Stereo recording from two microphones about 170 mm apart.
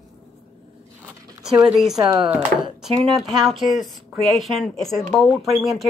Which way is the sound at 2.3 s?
Centre (ahead or behind).